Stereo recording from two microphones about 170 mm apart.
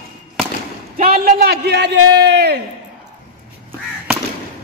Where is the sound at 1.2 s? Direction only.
70° right (ahead or behind); by 2.6 s 90° right.